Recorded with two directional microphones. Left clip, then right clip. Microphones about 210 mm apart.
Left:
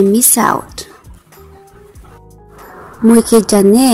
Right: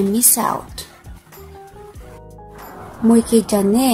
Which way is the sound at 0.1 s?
20° left (ahead or behind).